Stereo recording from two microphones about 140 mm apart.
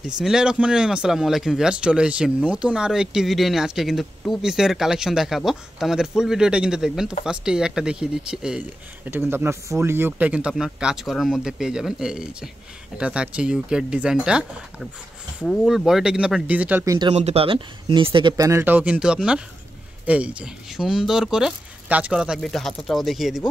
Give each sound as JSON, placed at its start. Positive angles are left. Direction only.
{"t": 0.0, "sound": "speech", "side_deg": -5}
{"t": 16.8, "sound": "speech", "side_deg": -25}
{"t": 17.1, "sound": "speech", "side_deg": -50}
{"t": 18.3, "sound": "speech", "side_deg": -20}